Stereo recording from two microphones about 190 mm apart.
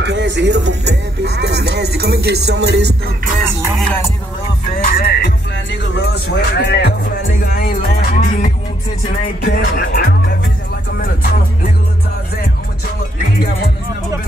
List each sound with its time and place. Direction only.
0.0 s speech: 65° right (ahead or behind)
3.7 s music: 5° left (ahead or behind)
4.7 s music: 45° left (ahead or behind)